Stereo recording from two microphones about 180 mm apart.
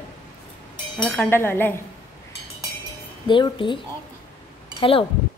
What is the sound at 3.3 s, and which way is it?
A woman's voice, 25° left (ahead or behind).